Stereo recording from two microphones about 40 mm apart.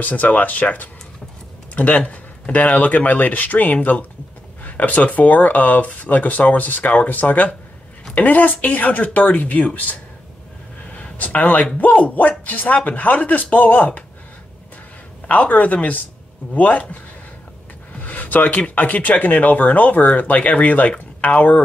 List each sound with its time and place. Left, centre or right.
0.0 s speech: left
10.9 s a sound: left
11.1 s speech: left
15.2 s speech: left